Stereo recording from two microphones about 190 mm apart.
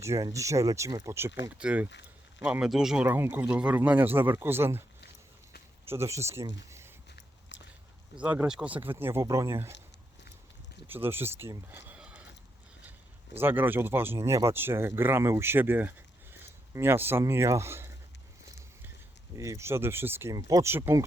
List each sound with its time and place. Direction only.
0.0 s speech: 15° right (ahead or behind)
5.9 s speech: 15° right (ahead or behind)
6.6 s a sound: 15° right (ahead or behind)
8.2 s speech: 5° right (ahead or behind)
10.8 s speech: 10° right (ahead or behind)
13.3 s speech: 10° right (ahead or behind)
19.4 s speech: 15° right (ahead or behind)